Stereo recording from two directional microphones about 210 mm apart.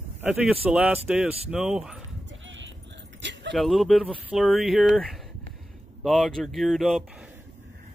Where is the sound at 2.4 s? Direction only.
65° right (ahead or behind).